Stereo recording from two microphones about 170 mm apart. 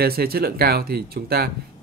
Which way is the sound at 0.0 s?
65° right (ahead or behind).